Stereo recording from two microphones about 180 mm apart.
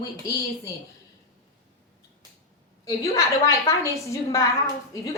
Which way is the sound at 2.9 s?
15° left (ahead or behind).